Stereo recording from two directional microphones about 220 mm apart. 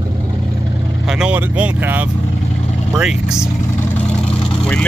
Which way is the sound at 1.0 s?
5° right (ahead or behind).